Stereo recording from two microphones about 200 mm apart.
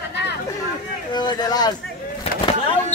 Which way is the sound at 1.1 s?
20° left (ahead or behind).